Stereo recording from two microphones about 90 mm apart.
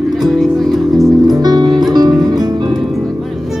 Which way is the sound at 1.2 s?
45° right (ahead or behind).